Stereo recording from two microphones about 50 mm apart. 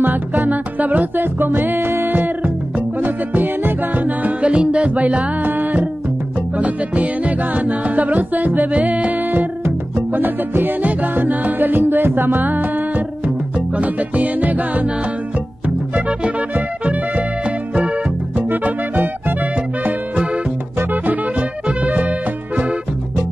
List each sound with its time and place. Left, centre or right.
0.0 s music: right
2.1 s music: right
5.4 s music: right
15.9 s music: right
18.5 s music: right
20.9 s music: right